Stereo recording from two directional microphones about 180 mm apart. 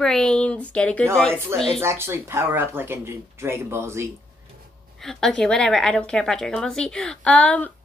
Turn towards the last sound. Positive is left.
turn(degrees=5)  # may be behind; listen again after turning